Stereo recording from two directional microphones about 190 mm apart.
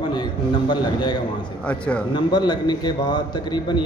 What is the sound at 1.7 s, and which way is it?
Speech, 5° left (ahead or behind).